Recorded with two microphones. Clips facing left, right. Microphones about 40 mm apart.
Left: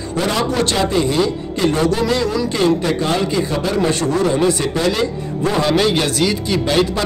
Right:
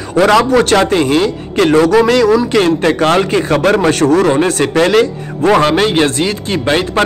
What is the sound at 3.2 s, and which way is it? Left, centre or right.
Speech, right.